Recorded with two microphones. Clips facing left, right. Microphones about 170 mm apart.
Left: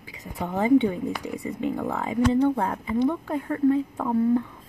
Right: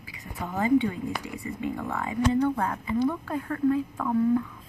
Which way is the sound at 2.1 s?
25° left (ahead or behind).